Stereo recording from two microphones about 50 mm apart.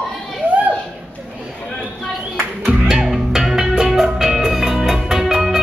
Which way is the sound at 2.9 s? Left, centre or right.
Centre.